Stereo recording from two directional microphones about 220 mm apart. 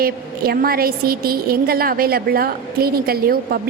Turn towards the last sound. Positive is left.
turn(degrees=-45)  # may be behind; listen again after turning